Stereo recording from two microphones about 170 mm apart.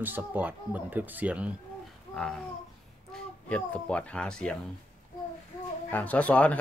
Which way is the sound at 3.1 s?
5° left (ahead or behind).